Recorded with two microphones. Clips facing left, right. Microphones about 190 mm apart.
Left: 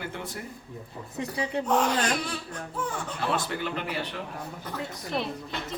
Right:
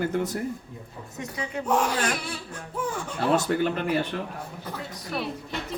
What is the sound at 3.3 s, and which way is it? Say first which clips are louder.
Speech: right 7 dB; 45° right (ahead or behind).